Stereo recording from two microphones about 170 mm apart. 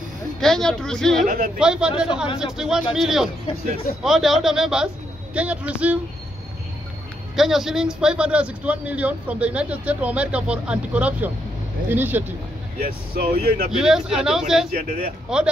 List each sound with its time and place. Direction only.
0.4 s speech: 5° left (ahead or behind)
1.2 s speech: 50° right (ahead or behind)
1.6 s speech: 5° right (ahead or behind)
7.3 s speech: centre (ahead or behind)
12.8 s speech: 60° right (ahead or behind)
13.7 s speech: 5° right (ahead or behind)
14.7 s speech: 50° right (ahead or behind)
15.2 s speech: 5° right (ahead or behind)